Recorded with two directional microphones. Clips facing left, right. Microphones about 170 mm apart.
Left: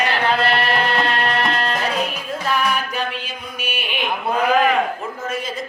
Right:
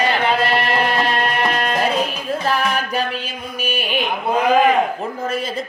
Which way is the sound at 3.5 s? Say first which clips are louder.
Right 6 dB; 40° right (ahead or behind).